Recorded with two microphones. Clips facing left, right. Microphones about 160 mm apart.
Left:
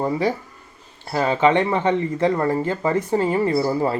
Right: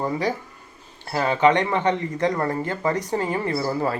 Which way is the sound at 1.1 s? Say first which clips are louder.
Left 1 dB; 20° left (ahead or behind).